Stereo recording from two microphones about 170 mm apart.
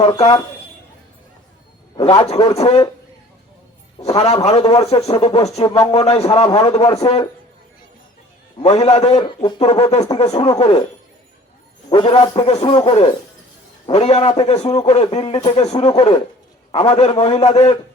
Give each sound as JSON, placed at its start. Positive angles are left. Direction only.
{"t": 0.0, "sound": "speech", "side_deg": 30}
{"t": 2.0, "sound": "a man's voice", "side_deg": 25}
{"t": 4.4, "sound": "a man's voice", "side_deg": 35}
{"t": 5.6, "sound": "speech", "side_deg": 25}
{"t": 5.9, "sound": "a man's voice", "side_deg": 35}
{"t": 8.8, "sound": "a man's voice", "side_deg": 35}
{"t": 10.3, "sound": "speech", "side_deg": 25}
{"t": 11.9, "sound": "a man's voice", "side_deg": 30}
{"t": 15.6, "sound": "a man's voice", "side_deg": 40}